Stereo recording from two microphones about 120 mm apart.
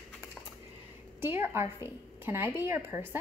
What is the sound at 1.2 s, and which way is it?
A woman's voice, 20° right (ahead or behind).